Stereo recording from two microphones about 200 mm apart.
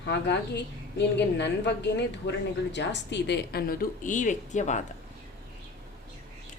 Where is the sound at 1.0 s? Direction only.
60° left (ahead or behind); by 4.8 s 35° left (ahead or behind).